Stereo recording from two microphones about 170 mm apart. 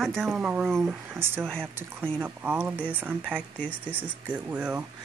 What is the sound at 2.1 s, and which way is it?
Speech, 10° right (ahead or behind).